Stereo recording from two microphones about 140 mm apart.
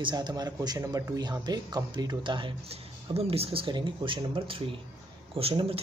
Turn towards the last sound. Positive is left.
turn(degrees=-40)  # may be behind; listen again after turning